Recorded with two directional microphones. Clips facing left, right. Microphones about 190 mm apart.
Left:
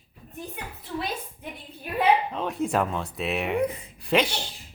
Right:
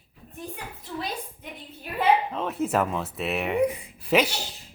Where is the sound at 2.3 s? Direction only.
Centre (ahead or behind).